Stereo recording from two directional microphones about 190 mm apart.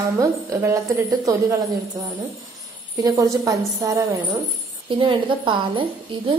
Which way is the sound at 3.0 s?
20° right (ahead or behind).